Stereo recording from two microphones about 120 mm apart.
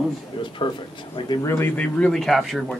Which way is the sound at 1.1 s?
40° left (ahead or behind).